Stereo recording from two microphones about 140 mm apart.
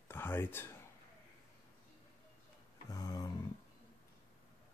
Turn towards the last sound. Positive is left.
turn(degrees=25)  # may be behind; listen again after turning